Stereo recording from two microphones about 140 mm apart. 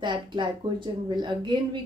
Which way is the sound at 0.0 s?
35° right (ahead or behind).